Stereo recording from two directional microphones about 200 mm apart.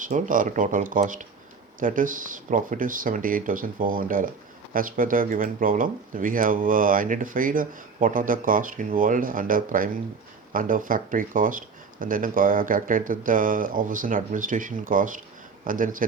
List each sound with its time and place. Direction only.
0.0 s speech: 40° right (ahead or behind)